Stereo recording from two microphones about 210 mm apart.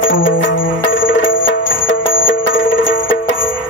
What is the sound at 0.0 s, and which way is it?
Music, 65° left (ahead or behind).